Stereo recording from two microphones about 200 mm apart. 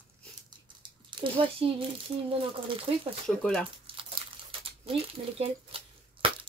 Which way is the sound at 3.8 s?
25° right (ahead or behind).